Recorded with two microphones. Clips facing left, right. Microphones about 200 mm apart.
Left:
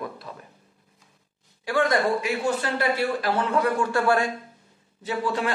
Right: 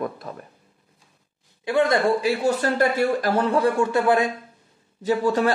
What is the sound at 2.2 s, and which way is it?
A man's voice, 40° right (ahead or behind).